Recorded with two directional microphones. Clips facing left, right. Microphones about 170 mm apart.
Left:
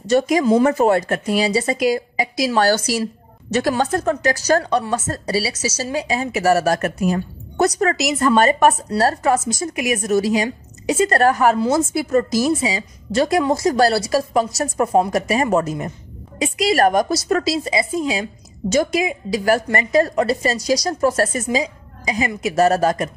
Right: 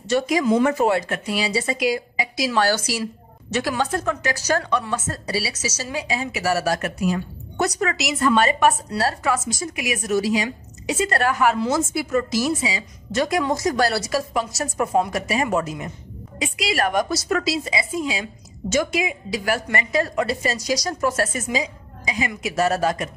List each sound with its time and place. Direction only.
0.1 s speech: 45° left (ahead or behind)